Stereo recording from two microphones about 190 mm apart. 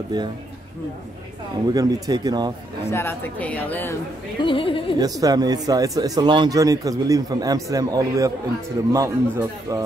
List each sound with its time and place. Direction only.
0.1 s speech: 20° right (ahead or behind)
1.7 s speech: 20° right (ahead or behind)
2.9 s a woman's voice: 10° left (ahead or behind)
4.4 s yodeling: 25° left (ahead or behind)
5.2 s a man's voice: 20° right (ahead or behind)